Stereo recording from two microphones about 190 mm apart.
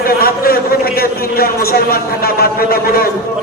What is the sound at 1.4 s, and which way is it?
A man's voice, 50° left (ahead or behind).